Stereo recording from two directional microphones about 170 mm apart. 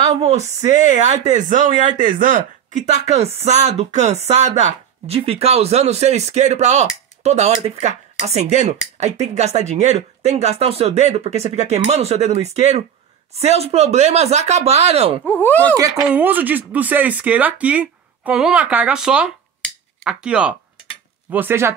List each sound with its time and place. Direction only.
0.7 s speech: 45° right (ahead or behind)
15.2 s speech: 10° left (ahead or behind)
16.0 s speech: 10° right (ahead or behind)